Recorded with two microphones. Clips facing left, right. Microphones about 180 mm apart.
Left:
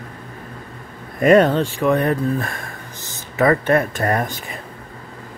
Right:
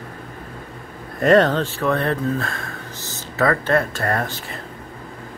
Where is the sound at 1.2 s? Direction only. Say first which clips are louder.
Left 2 dB; 10° left (ahead or behind).